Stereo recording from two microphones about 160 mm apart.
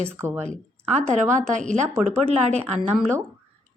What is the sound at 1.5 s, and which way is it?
Speech, 50° right (ahead or behind).